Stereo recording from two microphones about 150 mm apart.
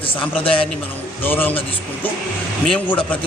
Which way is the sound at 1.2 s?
15° left (ahead or behind).